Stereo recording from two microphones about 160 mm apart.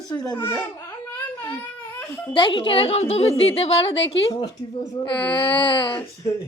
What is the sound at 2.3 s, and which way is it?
A woman's voice, 30° left (ahead or behind).